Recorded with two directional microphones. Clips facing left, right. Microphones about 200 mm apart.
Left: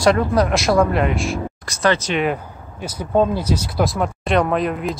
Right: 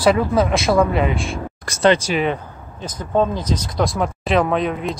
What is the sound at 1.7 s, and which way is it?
Speech, 55° right (ahead or behind).